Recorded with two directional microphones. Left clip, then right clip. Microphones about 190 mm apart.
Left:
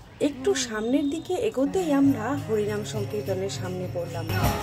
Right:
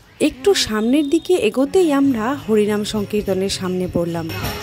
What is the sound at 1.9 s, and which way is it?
Speech, 50° right (ahead or behind).